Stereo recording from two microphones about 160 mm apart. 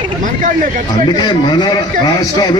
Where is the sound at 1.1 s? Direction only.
30° left (ahead or behind).